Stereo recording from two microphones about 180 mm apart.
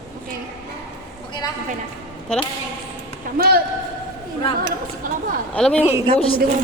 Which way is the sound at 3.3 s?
60° right (ahead or behind).